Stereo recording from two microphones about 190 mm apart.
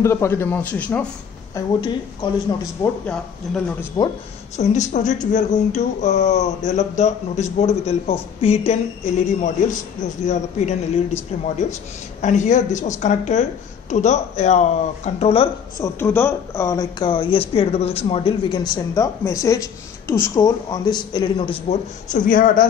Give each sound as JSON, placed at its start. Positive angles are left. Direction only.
{"t": 0.0, "sound": "a man's voice", "side_deg": 15}
{"t": 2.2, "sound": "speech", "side_deg": 25}
{"t": 2.8, "sound": "speech", "side_deg": 5}
{"t": 4.0, "sound": "speech", "side_deg": 20}
{"t": 4.6, "sound": "speech", "side_deg": 40}
{"t": 12.2, "sound": "speech", "side_deg": 40}
{"t": 15.8, "sound": "speech", "side_deg": 10}